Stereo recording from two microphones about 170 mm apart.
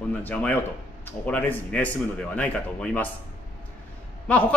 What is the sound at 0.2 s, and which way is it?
A man's voice, 10° left (ahead or behind).